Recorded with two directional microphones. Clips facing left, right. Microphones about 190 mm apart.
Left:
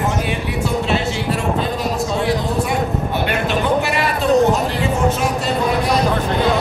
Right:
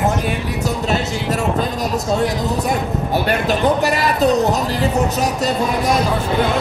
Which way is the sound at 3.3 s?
40° right (ahead or behind).